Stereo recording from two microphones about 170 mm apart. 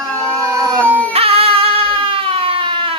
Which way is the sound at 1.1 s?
35° right (ahead or behind).